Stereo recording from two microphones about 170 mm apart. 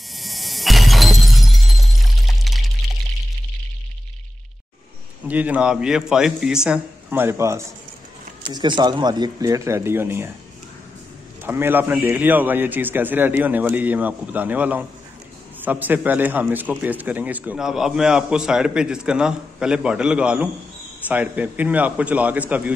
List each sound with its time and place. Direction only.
0.1 s shatter: centre (ahead or behind)
2.4 s pour: centre (ahead or behind)
5.3 s a man's voice: 10° right (ahead or behind)
11.4 s a man's voice: 10° right (ahead or behind)